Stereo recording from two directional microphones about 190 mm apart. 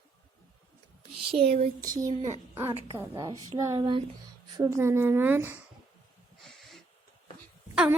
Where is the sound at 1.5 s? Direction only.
35° right (ahead or behind).